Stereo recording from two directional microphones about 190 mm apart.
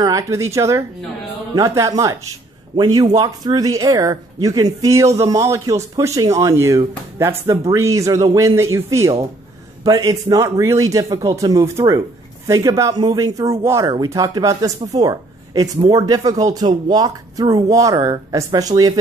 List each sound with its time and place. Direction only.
0.0 s speech: 15° right (ahead or behind)